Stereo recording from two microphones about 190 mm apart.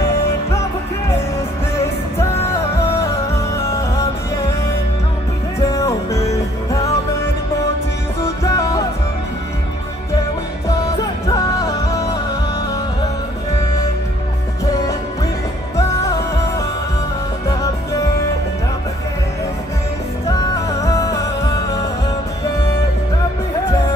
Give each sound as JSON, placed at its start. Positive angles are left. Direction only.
{"t": 3.5, "sound": "music", "side_deg": 15}
{"t": 5.6, "sound": "music", "side_deg": 20}
{"t": 8.5, "sound": "music", "side_deg": 20}
{"t": 11.2, "sound": "music", "side_deg": 20}
{"t": 15.7, "sound": "music", "side_deg": 15}
{"t": 20.2, "sound": "music", "side_deg": 20}